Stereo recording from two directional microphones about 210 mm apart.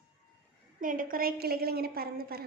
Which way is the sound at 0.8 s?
40° right (ahead or behind).